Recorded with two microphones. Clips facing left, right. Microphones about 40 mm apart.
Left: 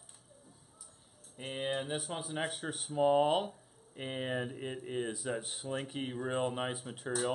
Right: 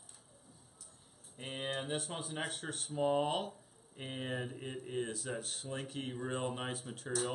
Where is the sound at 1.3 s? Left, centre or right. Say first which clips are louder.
Left 4 dB; centre.